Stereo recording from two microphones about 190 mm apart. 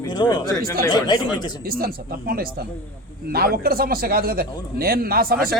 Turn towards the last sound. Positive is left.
turn(degrees=-50)  # may be behind; listen again after turning